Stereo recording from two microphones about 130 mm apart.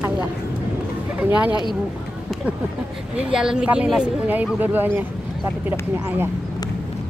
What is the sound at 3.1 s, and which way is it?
Speech, 5° right (ahead or behind).